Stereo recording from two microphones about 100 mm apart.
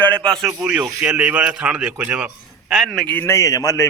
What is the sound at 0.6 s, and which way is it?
A man's voice, 10° right (ahead or behind).